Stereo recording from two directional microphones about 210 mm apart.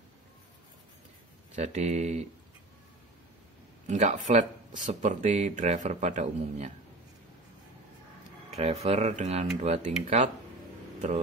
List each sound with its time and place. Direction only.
1.5 s speech: 30° right (ahead or behind)
3.8 s speech: 35° right (ahead or behind)
8.5 s speech: 30° right (ahead or behind)